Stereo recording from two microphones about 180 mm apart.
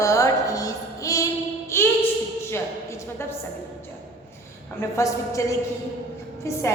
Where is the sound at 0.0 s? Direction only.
20° left (ahead or behind).